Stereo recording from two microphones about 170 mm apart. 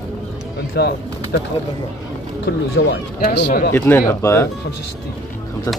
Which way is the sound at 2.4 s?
90° left.